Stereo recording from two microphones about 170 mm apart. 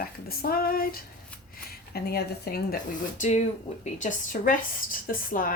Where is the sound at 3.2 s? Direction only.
50° left (ahead or behind).